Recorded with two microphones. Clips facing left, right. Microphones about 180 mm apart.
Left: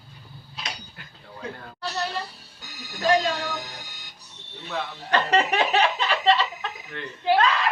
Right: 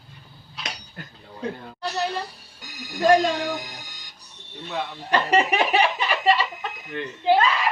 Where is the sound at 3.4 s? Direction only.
15° right (ahead or behind).